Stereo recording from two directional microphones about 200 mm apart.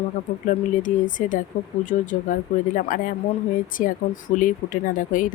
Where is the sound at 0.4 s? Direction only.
40° left (ahead or behind).